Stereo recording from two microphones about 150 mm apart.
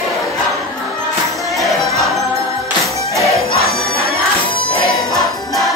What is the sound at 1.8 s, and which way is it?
Music, 20° right (ahead or behind).